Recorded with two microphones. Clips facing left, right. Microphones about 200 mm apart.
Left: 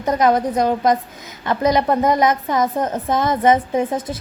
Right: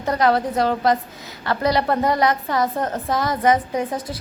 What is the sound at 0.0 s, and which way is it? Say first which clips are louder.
A woman's voice: left 2 dB; 20° left (ahead or behind).